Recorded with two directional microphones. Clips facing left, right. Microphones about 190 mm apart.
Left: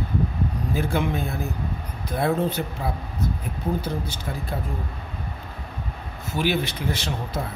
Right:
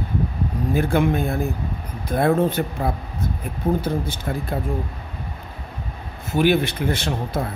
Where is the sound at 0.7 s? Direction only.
55° right (ahead or behind).